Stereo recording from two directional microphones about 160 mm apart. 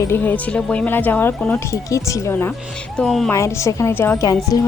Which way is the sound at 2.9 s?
Centre (ahead or behind).